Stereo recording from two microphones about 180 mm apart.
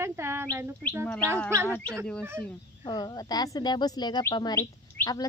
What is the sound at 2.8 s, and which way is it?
Speech, 25° left (ahead or behind).